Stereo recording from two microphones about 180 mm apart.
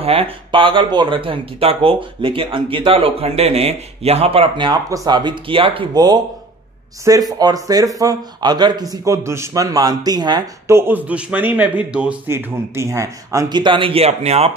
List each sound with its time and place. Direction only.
0.0 s a man's voice: 30° right (ahead or behind)